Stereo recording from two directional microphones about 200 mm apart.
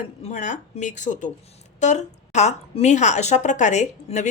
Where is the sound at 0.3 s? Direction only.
35° left (ahead or behind).